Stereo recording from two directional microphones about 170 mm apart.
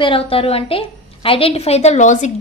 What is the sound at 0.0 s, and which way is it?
A woman's voice, 35° left (ahead or behind).